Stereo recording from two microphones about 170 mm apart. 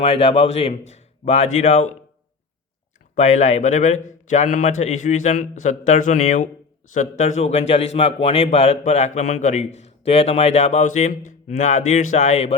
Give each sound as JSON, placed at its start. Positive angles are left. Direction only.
{"t": 0.0, "sound": "a man's voice", "side_deg": 35}
{"t": 3.2, "sound": "a man's voice", "side_deg": 40}